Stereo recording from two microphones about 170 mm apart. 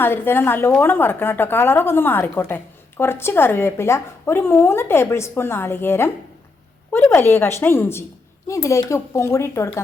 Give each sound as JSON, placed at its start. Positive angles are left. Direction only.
{"t": 0.0, "sound": "speech", "side_deg": 15}